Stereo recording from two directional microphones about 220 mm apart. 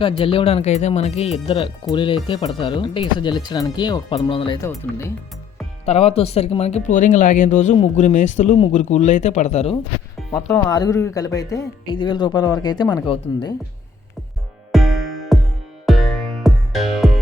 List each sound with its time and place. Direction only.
0.0 s speech: 25° left (ahead or behind)
4.7 s speech: 10° left (ahead or behind)
5.8 s speech: 30° left (ahead or behind)
10.3 s speech: 15° left (ahead or behind)
14.7 s music: centre (ahead or behind)